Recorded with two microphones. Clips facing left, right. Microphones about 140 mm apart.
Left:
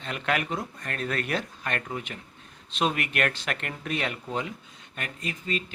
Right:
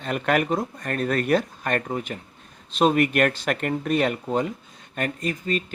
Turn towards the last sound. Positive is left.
turn(degrees=-45)  # may be behind; listen again after turning